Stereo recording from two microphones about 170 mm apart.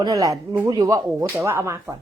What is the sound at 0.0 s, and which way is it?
Speech, 20° right (ahead or behind).